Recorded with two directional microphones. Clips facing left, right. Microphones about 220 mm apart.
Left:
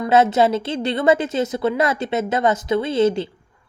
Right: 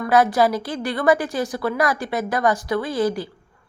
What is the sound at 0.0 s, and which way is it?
A woman's voice, 25° left (ahead or behind).